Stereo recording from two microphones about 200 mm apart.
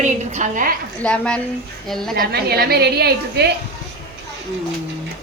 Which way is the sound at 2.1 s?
50° right (ahead or behind).